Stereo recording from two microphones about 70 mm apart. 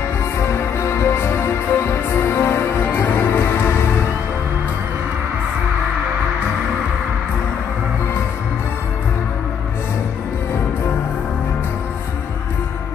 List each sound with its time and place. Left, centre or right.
0.4 s music: left